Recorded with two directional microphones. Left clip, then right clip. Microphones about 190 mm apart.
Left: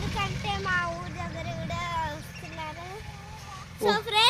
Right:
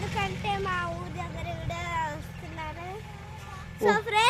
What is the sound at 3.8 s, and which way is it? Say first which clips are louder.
Speech: right 1 dB; centre (ahead or behind).